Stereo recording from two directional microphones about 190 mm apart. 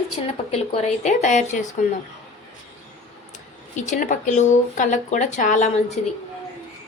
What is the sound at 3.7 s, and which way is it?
A woman's voice, 40° left (ahead or behind).